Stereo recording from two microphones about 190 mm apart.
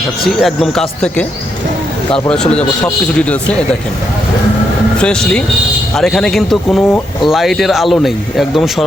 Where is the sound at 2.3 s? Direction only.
5° left (ahead or behind).